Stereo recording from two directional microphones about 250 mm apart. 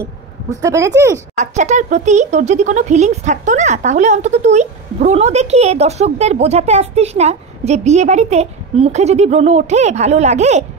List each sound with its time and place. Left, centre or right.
0.5 s a woman's voice: centre
1.3 s speech: right